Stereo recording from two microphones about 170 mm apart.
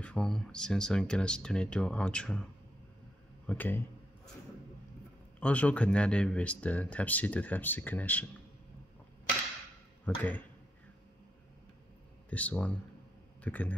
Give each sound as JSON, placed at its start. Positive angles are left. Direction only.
{"t": 0.0, "sound": "speech", "side_deg": 5}
{"t": 3.4, "sound": "speech", "side_deg": 10}
{"t": 5.4, "sound": "speech", "side_deg": 10}
{"t": 10.0, "sound": "speech", "side_deg": 10}
{"t": 12.3, "sound": "a man's voice", "side_deg": 10}